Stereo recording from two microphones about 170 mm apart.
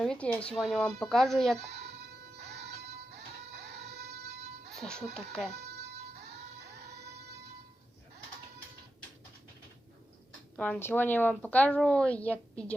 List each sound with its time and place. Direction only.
0.0 s speech: 5° left (ahead or behind)
2.5 s music: 85° right
4.8 s speech: 5° left (ahead or behind)
10.6 s speech: 10° left (ahead or behind)